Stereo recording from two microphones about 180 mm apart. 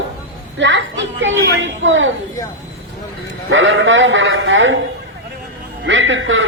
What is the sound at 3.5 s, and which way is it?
A woman's voice, 90° right.